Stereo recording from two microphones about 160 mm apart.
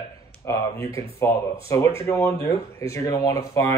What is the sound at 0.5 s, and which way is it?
Speech, 15° left (ahead or behind).